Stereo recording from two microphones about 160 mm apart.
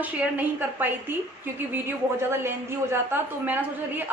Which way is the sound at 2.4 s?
15° right (ahead or behind).